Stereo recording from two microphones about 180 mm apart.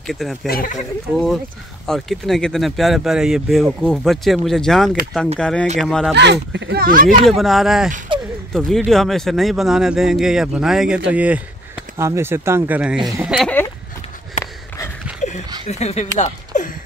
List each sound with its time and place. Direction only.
0.0 s speech: centre (ahead or behind)
0.5 s speech: 55° left (ahead or behind)
1.1 s speech: centre (ahead or behind)
6.1 s speech: 70° right (ahead or behind); by 7.2 s 50° right (ahead or behind)
7.2 s speech: centre (ahead or behind)
14.4 s a sound: 40° left (ahead or behind)
15.6 s speech: 35° left (ahead or behind)